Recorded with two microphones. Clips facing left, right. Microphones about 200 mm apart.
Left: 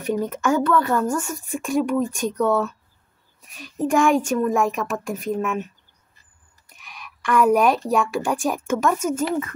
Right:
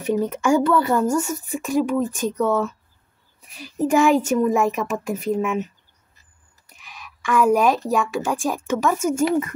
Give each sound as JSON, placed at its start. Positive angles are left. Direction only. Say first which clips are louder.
{"t": 0.0, "sound": "speech", "louder": "right 2 dB", "side_deg": -10}
{"t": 6.9, "sound": "a sound", "louder": "even", "side_deg": -5}
{"t": 7.9, "sound": "speech", "louder": "even", "side_deg": 0}